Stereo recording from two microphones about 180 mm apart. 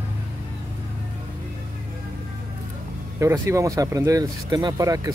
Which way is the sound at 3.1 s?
15° right (ahead or behind).